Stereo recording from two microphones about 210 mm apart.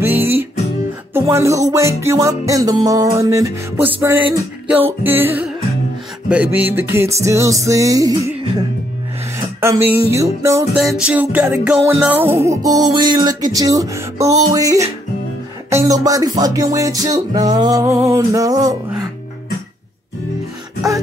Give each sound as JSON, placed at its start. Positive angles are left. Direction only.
{"t": 0.0, "sound": "music", "side_deg": -10}
{"t": 9.6, "sound": "music", "side_deg": -10}
{"t": 10.8, "sound": "music", "side_deg": -5}